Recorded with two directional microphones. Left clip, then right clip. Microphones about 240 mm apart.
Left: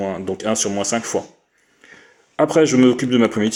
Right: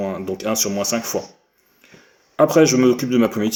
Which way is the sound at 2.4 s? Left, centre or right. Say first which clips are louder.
Even; left.